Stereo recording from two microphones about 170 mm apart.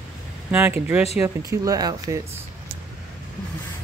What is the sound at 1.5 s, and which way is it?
Speech, 20° right (ahead or behind).